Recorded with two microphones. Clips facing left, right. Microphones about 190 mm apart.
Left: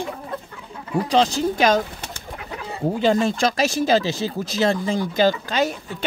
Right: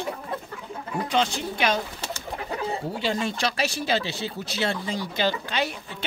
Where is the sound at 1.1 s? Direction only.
35° left (ahead or behind).